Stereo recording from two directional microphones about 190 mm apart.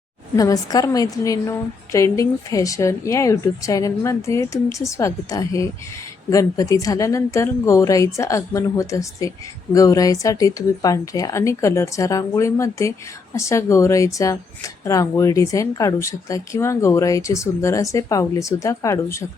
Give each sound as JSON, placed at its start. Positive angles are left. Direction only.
{"t": 0.3, "sound": "a woman's voice", "side_deg": 20}